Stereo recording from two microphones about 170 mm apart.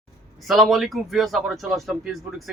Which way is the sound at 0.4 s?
Centre (ahead or behind).